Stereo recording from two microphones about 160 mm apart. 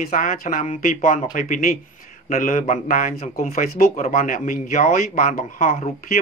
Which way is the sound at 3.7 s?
60° left (ahead or behind).